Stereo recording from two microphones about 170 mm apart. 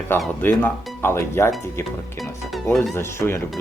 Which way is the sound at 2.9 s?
15° left (ahead or behind).